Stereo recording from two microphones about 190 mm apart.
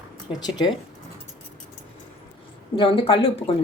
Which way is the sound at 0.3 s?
20° left (ahead or behind).